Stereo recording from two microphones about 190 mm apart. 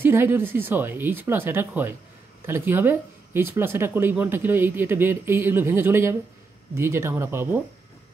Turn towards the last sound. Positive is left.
turn(degrees=-10)  # may be behind; listen again after turning